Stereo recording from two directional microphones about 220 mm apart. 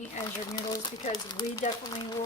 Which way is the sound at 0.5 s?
20° left (ahead or behind).